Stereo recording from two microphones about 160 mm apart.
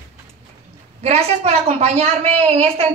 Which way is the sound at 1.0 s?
40° right (ahead or behind).